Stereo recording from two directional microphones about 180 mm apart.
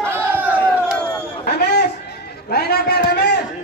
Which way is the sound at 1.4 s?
60° left (ahead or behind).